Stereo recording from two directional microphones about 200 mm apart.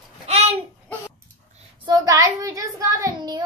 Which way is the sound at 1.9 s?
15° right (ahead or behind).